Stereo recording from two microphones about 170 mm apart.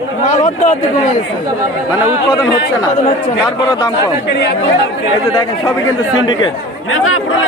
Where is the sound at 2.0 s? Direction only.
15° right (ahead or behind).